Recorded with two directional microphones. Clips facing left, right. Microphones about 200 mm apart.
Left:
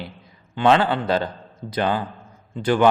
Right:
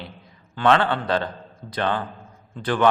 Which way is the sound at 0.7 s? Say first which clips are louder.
Left 2 dB; 5° left (ahead or behind).